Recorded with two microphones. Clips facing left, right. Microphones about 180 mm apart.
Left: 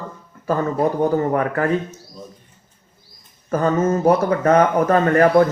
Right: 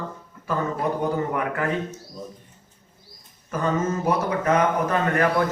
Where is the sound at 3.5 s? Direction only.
45° left (ahead or behind).